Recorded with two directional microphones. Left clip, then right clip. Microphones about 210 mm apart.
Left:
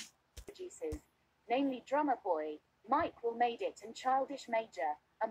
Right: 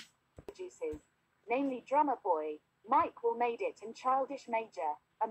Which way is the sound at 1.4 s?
Centre (ahead or behind).